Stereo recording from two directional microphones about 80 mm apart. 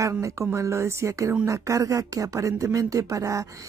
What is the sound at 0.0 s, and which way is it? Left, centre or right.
Speech, right.